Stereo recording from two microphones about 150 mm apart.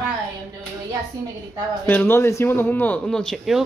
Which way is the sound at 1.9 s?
15° left (ahead or behind).